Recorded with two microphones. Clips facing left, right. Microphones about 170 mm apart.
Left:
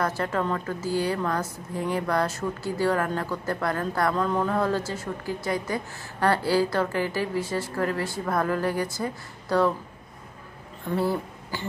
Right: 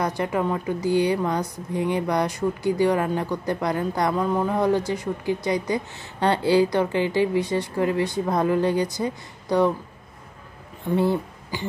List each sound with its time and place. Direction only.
0.2 s speech: 15° right (ahead or behind)
11.0 s speech: 20° right (ahead or behind)